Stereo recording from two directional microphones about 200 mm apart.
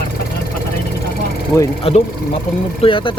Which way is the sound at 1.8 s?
30° left (ahead or behind).